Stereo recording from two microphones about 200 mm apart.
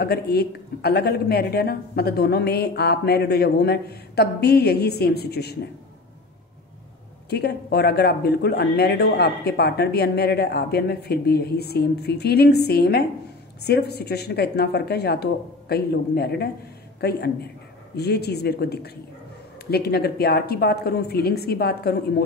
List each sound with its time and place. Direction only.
0.0 s speech: 55° left (ahead or behind)
7.2 s speech: 55° left (ahead or behind)